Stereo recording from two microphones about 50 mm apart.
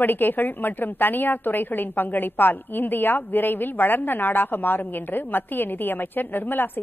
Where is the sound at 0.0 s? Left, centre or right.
Left.